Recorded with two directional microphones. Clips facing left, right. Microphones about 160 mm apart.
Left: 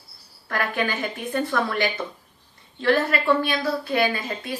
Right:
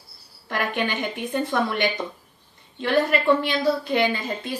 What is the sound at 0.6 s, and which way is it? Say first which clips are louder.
A woman's voice: even; 20° right (ahead or behind).